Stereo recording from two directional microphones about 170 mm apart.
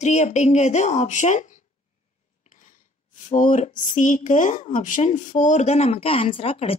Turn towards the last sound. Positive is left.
turn(degrees=35)  # may be behind; listen again after turning